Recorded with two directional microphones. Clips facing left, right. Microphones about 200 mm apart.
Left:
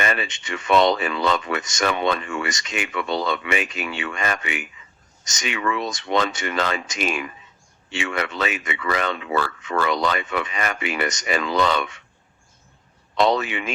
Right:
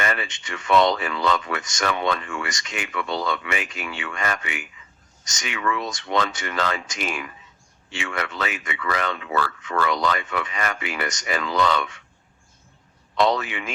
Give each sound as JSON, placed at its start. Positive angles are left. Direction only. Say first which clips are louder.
{"t": 0.0, "sound": "speech", "louder": "left 2 dB", "side_deg": 20}
{"t": 13.1, "sound": "speech", "louder": "left 2 dB", "side_deg": 20}